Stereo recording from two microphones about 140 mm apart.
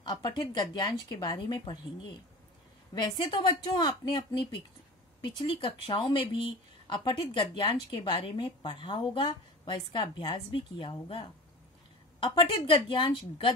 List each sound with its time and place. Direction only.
0.0 s speech: 30° left (ahead or behind)
2.9 s a woman's voice: 30° left (ahead or behind)